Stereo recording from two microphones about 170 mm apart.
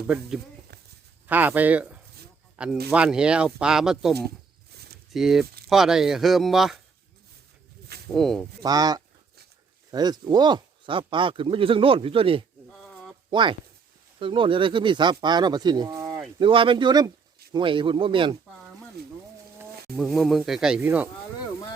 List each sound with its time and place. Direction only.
1.3 s speech: 10° right (ahead or behind)
4.7 s a sound: 70° right (ahead or behind)
5.1 s speech: centre (ahead or behind)
8.0 s speech: 5° left (ahead or behind)
8.6 s speech: 20° right (ahead or behind)
12.8 s a sound: centre (ahead or behind)
13.3 s speech: 30° right (ahead or behind)
16.4 s speech: 30° right (ahead or behind)
19.0 s a sound: 70° right (ahead or behind)
20.0 s speech: centre (ahead or behind)